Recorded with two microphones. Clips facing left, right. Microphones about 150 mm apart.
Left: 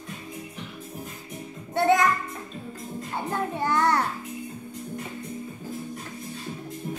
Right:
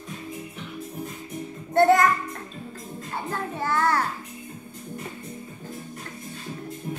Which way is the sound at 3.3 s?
20° left (ahead or behind).